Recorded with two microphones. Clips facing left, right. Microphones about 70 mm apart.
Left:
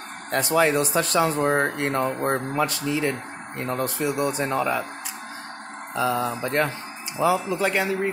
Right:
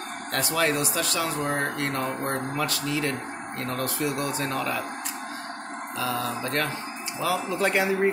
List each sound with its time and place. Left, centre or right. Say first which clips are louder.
0.3 s speech: left 5 dB; left
5.9 s speech: left 5 dB; left
7.3 s speech: left 1 dB; centre